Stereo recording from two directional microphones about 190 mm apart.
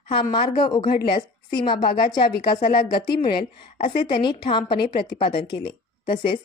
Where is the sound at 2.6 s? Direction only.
45° left (ahead or behind).